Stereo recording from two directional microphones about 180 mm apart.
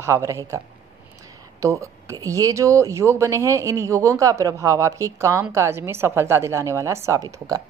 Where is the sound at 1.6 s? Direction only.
15° right (ahead or behind).